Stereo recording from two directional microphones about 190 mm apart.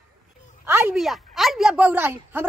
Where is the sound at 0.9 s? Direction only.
Centre (ahead or behind).